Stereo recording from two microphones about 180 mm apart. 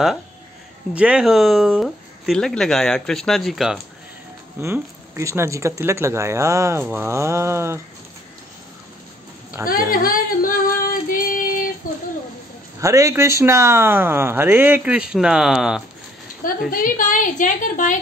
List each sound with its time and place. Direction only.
0.9 s speech: 5° right (ahead or behind)
4.6 s speech: 15° right (ahead or behind)
9.7 s female singing: 50° left (ahead or behind)
12.8 s speech: 15° right (ahead or behind)
16.4 s a sound: 50° left (ahead or behind)
16.8 s a woman's voice: 50° left (ahead or behind)